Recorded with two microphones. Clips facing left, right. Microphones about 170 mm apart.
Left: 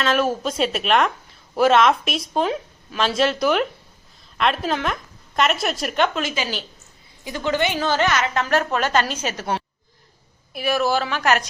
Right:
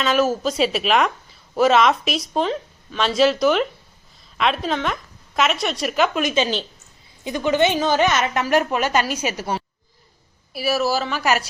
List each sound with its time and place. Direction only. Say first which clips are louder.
0.0 s a woman's voice: right 2 dB; centre (ahead or behind)
6.1 s a woman's voice: right 5 dB; 20° right (ahead or behind)
10.5 s a woman's voice: even; 5° right (ahead or behind)